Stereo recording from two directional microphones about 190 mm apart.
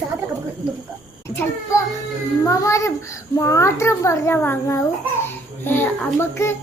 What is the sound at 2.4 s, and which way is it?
A child's voice, 15° left (ahead or behind).